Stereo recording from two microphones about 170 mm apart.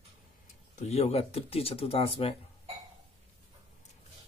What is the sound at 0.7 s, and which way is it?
Speech, 40° left (ahead or behind).